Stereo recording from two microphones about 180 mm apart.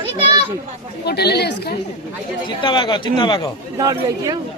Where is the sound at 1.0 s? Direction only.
65° left (ahead or behind).